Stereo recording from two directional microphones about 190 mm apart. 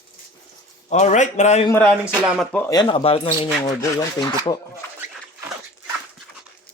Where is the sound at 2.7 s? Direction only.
25° left (ahead or behind).